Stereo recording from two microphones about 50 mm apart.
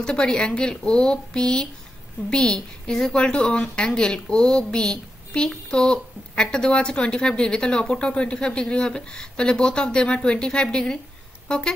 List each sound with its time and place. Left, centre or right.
0.0 s a woman's voice: centre